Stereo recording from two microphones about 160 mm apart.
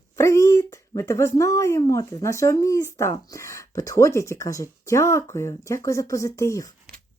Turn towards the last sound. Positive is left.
turn(degrees=20)  # may be behind; listen again after turning